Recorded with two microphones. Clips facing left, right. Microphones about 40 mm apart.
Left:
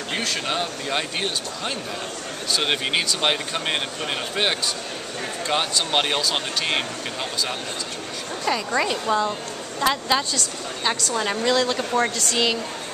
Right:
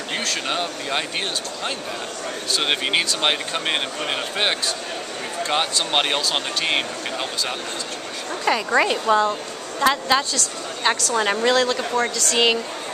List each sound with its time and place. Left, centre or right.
0.1 s speech: centre
9.2 s a woman's voice: centre
11.1 s speech: centre
11.5 s speech: centre